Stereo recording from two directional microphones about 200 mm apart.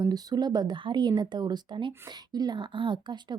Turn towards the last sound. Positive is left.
turn(degrees=-20)  # may be behind; listen again after turning